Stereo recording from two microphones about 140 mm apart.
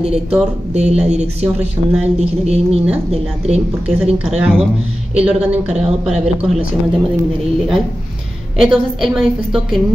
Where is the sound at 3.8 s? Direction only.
5° right (ahead or behind).